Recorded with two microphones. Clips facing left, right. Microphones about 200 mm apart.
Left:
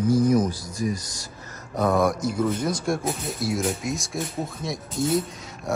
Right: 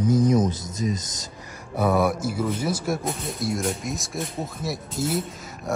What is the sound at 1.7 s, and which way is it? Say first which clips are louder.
Speech: even; 5° right (ahead or behind).